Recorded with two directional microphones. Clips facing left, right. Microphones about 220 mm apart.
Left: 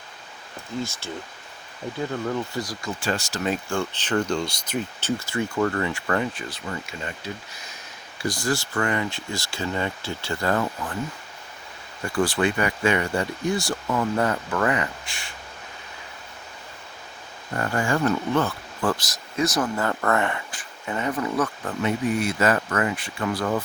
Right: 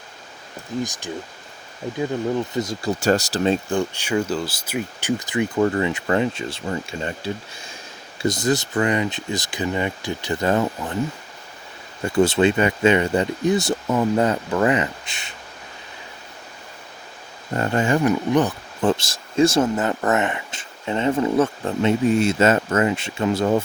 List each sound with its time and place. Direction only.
0.8 s speech: 15° right (ahead or behind)
2.8 s speech: 40° right (ahead or behind)
3.8 s speech: 10° right (ahead or behind)
12.0 s speech: 25° right (ahead or behind)
17.5 s speech: 25° right (ahead or behind)